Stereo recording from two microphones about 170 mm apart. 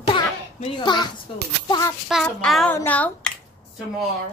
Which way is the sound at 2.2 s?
5° left (ahead or behind).